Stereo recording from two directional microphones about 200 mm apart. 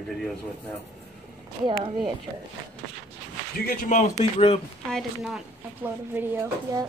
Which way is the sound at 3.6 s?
40° left (ahead or behind).